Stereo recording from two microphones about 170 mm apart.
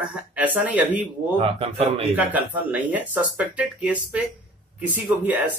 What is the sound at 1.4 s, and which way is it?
Speech, 35° right (ahead or behind).